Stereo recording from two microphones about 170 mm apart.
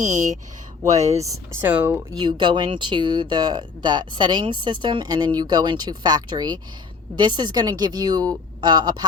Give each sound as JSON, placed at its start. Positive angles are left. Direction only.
{"t": 0.0, "sound": "speech", "side_deg": -45}
{"t": 1.6, "sound": "speech", "side_deg": -10}
{"t": 2.1, "sound": "speech", "side_deg": -25}